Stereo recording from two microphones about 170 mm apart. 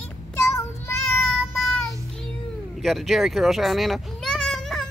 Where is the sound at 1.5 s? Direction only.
Centre (ahead or behind).